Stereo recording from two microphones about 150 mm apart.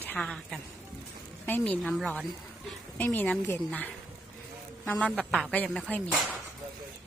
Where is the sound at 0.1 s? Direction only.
5° left (ahead or behind).